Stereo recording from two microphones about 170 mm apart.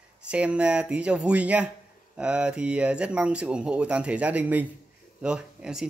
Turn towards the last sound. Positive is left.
turn(degrees=-5)  # may be behind; listen again after turning